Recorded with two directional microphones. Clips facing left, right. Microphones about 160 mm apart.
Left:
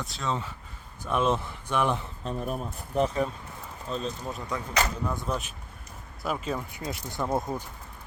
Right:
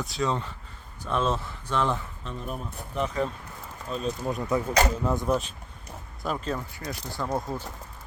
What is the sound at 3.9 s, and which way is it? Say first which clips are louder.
Speech: right 3 dB; 5° right (ahead or behind).